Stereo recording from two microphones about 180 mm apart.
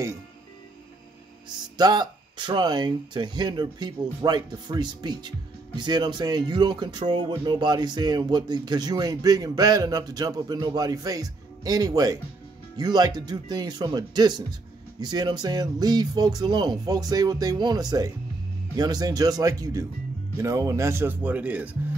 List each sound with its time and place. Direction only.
1.8 s speech: 20° right (ahead or behind)